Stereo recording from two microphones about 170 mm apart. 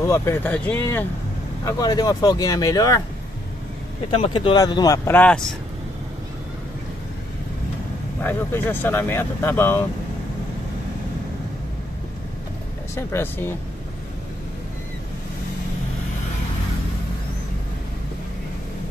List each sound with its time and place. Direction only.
0.0 s speech: 15° left (ahead or behind)
1.6 s speech: 20° left (ahead or behind)
4.1 s speech: 35° left (ahead or behind); by 5.4 s 10° left (ahead or behind)
8.2 s speech: 10° left (ahead or behind)
12.9 s speech: 15° left (ahead or behind)